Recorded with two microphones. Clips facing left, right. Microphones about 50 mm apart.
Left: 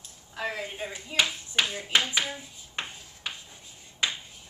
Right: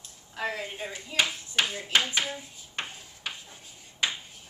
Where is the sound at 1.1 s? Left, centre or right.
Left.